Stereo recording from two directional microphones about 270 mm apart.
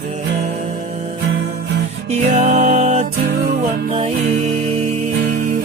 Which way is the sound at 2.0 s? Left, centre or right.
Right.